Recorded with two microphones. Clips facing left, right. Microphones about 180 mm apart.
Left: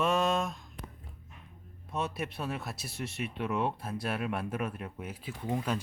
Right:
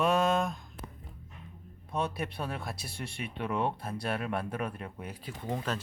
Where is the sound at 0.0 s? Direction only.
Centre (ahead or behind).